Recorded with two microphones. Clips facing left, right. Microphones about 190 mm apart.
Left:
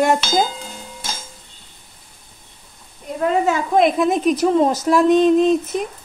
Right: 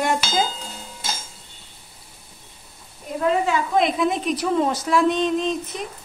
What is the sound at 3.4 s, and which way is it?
A woman's voice, 45° left (ahead or behind).